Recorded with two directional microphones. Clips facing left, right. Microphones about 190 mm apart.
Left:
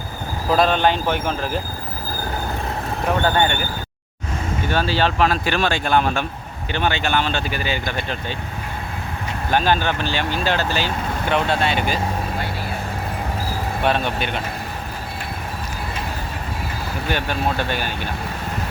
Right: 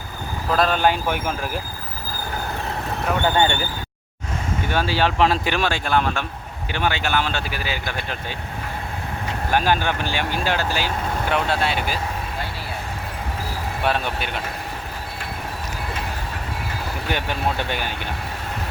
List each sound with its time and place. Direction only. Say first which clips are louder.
0.5 s speech: left 2 dB; centre (ahead or behind)
3.2 s speech: right 1 dB; 25° right (ahead or behind)
4.7 s speech: left 1 dB; 15° right (ahead or behind)
5.2 s speech: even; 25° right (ahead or behind)
5.5 s speech: left 2 dB; 5° right (ahead or behind)
9.5 s speech: left 1 dB; 10° right (ahead or behind)
13.8 s speech: left 3 dB; 5° right (ahead or behind)
17.1 s speech: left 2 dB; 15° right (ahead or behind)